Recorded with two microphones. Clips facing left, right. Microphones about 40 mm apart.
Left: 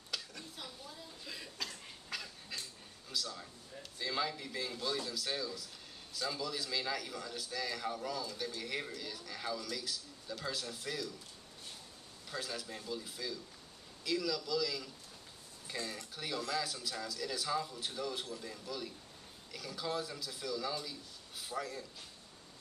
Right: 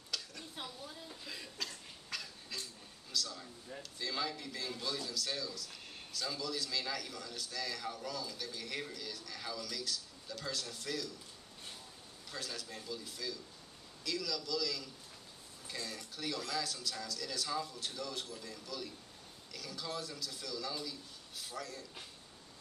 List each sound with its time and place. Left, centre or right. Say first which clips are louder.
0.1 s a sound: even; centre
0.6 s a woman's voice: right 4 dB; right
1.2 s cough: left 1 dB; centre
3.1 s a man's voice: right 1 dB; centre
12.3 s a man's voice: left 3 dB; centre